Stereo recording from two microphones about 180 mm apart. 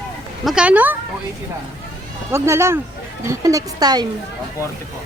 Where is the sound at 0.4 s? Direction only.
5° right (ahead or behind).